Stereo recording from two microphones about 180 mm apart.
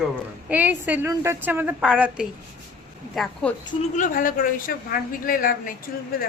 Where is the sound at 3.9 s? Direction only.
45° left (ahead or behind).